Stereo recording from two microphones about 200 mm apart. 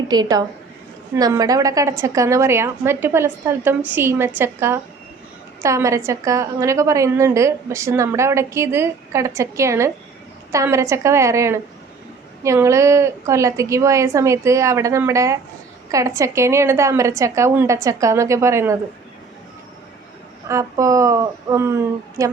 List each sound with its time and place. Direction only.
0.1 s a woman's voice: 20° right (ahead or behind)
20.5 s a woman's voice: 15° right (ahead or behind)